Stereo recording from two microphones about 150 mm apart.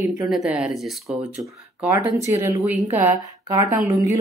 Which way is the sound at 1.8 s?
10° right (ahead or behind).